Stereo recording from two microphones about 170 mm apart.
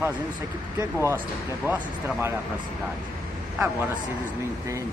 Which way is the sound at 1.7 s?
10° right (ahead or behind).